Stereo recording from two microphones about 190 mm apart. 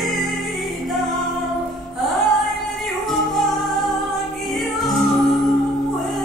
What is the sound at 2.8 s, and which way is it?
Music, centre (ahead or behind).